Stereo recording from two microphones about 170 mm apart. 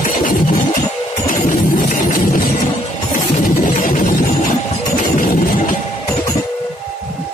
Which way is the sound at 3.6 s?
55° left (ahead or behind).